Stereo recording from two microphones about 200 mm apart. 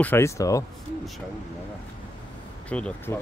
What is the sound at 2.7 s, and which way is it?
Speech, 5° left (ahead or behind).